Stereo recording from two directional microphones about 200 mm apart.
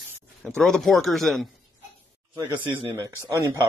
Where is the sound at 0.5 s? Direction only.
Centre (ahead or behind).